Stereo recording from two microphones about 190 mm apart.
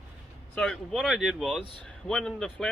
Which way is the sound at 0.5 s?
Centre (ahead or behind).